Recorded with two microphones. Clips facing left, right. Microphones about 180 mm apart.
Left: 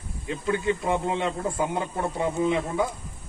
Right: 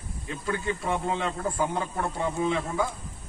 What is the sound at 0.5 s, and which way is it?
A man's voice, 20° left (ahead or behind).